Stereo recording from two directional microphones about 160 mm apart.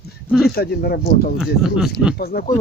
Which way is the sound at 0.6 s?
75° left (ahead or behind).